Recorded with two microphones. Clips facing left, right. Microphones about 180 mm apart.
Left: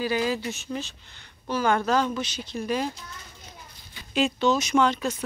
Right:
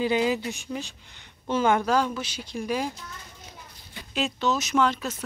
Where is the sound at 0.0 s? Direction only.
20° right (ahead or behind).